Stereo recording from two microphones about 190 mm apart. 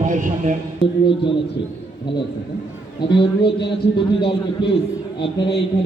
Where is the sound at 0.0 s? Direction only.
45° right (ahead or behind).